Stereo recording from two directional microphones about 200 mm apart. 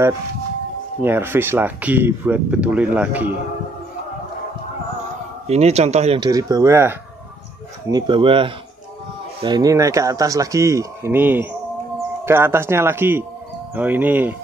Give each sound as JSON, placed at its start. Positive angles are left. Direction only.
{"t": 1.0, "sound": "speech", "side_deg": -10}
{"t": 5.5, "sound": "speech", "side_deg": -30}
{"t": 7.9, "sound": "speech", "side_deg": -25}